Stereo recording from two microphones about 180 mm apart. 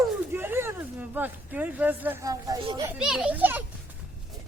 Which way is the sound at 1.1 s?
10° right (ahead or behind).